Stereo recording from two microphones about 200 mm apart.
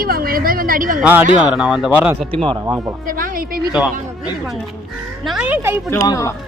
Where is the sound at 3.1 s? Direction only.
45° right (ahead or behind).